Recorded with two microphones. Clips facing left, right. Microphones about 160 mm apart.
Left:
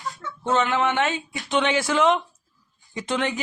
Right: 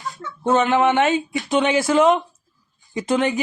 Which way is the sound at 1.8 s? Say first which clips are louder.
Right 6 dB; 40° right (ahead or behind).